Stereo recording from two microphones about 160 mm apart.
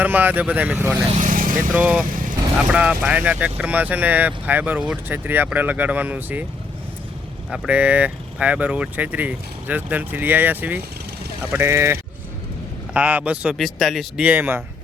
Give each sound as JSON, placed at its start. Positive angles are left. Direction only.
{"t": 0.0, "sound": "speech", "side_deg": -10}
{"t": 1.2, "sound": "vehicle", "side_deg": -55}
{"t": 1.7, "sound": "speech", "side_deg": -10}
{"t": 7.5, "sound": "speech", "side_deg": -5}